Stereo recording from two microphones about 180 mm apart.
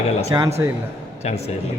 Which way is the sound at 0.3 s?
20° right (ahead or behind).